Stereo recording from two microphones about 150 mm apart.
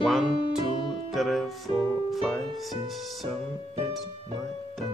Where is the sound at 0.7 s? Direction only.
35° left (ahead or behind).